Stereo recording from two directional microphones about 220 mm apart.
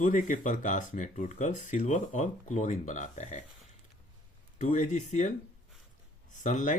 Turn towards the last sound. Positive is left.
turn(degrees=35)  # may be behind; listen again after turning